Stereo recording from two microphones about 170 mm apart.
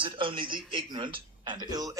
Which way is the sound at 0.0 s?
30° right (ahead or behind).